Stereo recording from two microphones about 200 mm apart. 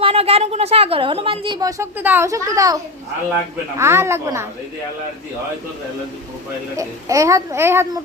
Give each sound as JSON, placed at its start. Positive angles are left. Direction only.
{"t": 0.0, "sound": "speech", "side_deg": -30}
{"t": 3.8, "sound": "a child's voice", "side_deg": -15}
{"t": 6.7, "sound": "a child's voice", "side_deg": -15}